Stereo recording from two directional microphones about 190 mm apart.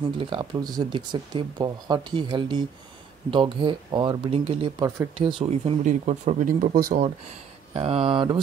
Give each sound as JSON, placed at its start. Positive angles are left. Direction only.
{"t": 0.2, "sound": "speech", "side_deg": -25}
{"t": 4.8, "sound": "speech", "side_deg": -15}
{"t": 5.1, "sound": "speech", "side_deg": -30}
{"t": 7.7, "sound": "speech", "side_deg": -30}